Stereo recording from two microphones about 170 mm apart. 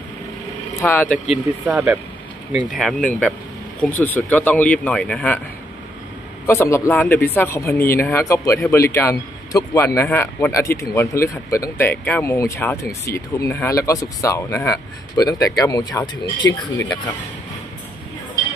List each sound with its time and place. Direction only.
0.7 s speech: 10° left (ahead or behind)
6.4 s speech: 15° left (ahead or behind)